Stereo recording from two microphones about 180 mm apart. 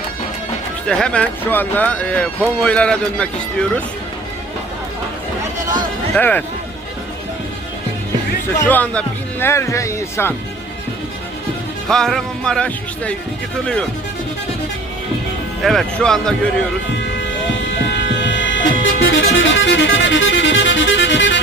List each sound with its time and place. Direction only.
0.9 s speech: 5° left (ahead or behind)
6.1 s speech: 10° left (ahead or behind)
8.5 s speech: 10° left (ahead or behind)
11.9 s speech: centre (ahead or behind)
15.6 s speech: centre (ahead or behind)
18.1 s vehicle: 90° left
19.1 s music: 90° left